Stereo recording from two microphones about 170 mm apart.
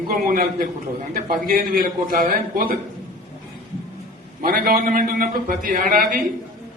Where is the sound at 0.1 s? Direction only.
60° right (ahead or behind).